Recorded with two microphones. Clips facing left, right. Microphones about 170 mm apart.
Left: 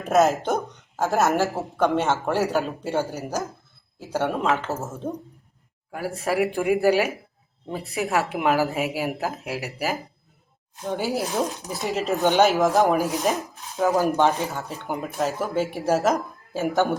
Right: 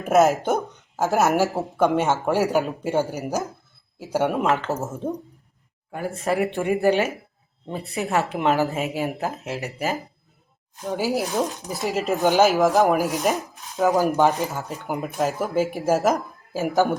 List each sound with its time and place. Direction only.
0.0 s speech: centre (ahead or behind)
1.2 s speech: 15° right (ahead or behind)
4.4 s speech: centre (ahead or behind)